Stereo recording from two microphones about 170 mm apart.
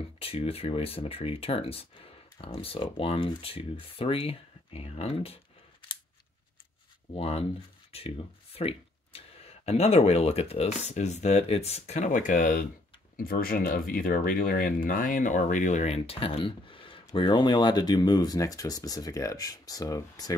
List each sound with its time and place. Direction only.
0.2 s speech: 35° left (ahead or behind)
7.2 s speech: 35° left (ahead or behind)